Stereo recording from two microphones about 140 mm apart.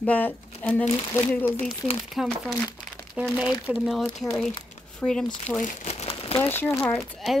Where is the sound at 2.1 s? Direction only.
Centre (ahead or behind).